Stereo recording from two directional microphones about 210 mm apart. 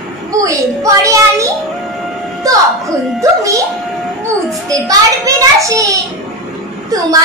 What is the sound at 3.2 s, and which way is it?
Speech, 15° right (ahead or behind).